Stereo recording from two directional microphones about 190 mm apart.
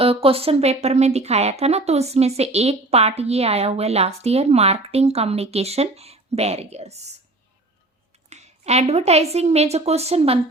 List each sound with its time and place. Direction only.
0.0 s a woman's voice: 30° right (ahead or behind)
8.3 s a woman's voice: 35° right (ahead or behind)